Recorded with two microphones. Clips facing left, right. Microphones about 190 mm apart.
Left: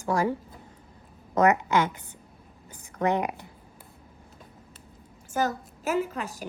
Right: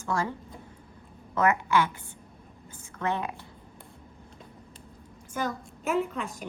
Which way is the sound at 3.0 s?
15° left (ahead or behind).